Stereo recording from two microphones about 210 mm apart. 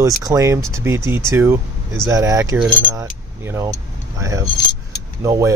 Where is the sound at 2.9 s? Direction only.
15° right (ahead or behind).